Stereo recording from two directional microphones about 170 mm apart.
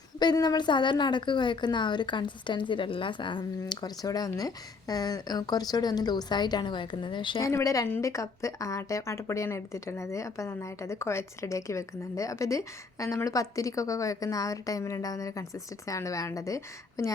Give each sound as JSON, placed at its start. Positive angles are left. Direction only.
{"t": 0.2, "sound": "a woman's voice", "side_deg": 25}
{"t": 7.4, "sound": "a woman's voice", "side_deg": 20}